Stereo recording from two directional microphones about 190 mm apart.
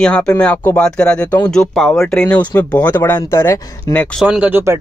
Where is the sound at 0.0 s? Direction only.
5° left (ahead or behind).